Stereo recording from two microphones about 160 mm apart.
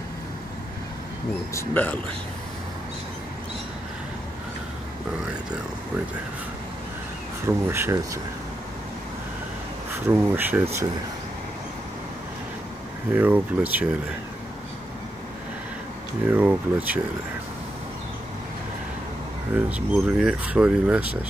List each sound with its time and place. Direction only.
1.5 s speech: 15° left (ahead or behind)
7.4 s speech: 15° right (ahead or behind)
10.0 s speech: 15° right (ahead or behind)
13.1 s speech: 10° right (ahead or behind)
16.3 s speech: 10° right (ahead or behind)
19.5 s speech: 10° right (ahead or behind)